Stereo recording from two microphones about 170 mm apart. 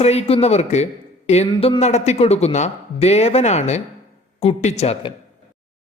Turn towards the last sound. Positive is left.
turn(degrees=35)  # may be behind; listen again after turning